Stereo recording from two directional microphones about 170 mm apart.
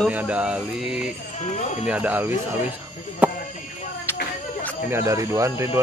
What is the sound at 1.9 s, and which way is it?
Speech, 10° right (ahead or behind).